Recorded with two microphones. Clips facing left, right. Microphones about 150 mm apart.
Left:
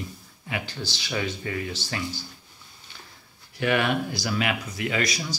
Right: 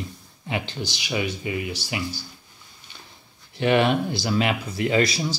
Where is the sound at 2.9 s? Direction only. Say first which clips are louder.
Right 1 dB; 20° right (ahead or behind).